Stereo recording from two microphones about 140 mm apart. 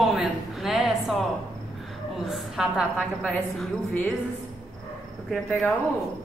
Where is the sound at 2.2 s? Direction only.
Centre (ahead or behind).